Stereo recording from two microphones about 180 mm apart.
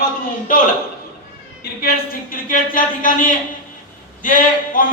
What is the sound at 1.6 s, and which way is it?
Speech, 55° left (ahead or behind).